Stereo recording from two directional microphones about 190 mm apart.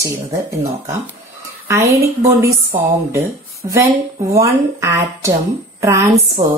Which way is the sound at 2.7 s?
45° right (ahead or behind).